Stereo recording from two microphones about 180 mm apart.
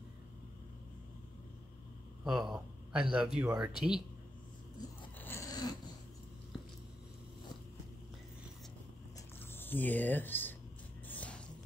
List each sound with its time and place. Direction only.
2.2 s speech: 5° right (ahead or behind)
5.2 s dog: 15° left (ahead or behind)
9.4 s speech: 10° left (ahead or behind)
11.1 s a sound: 5° left (ahead or behind)